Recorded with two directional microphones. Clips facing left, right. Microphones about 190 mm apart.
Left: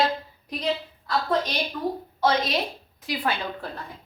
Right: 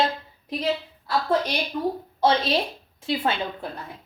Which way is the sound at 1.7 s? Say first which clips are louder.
Right 2 dB; 20° right (ahead or behind).